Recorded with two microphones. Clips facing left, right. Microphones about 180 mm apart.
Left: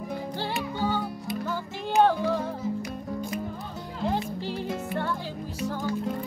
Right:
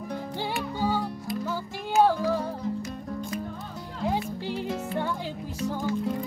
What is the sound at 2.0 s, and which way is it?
Music, 5° right (ahead or behind).